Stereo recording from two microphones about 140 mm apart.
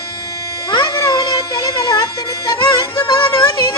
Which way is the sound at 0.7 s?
30° left (ahead or behind).